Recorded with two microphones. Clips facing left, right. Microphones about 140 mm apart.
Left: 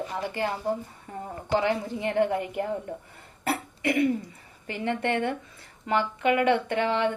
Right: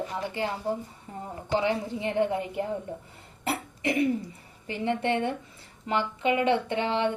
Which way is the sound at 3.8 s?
25° right (ahead or behind).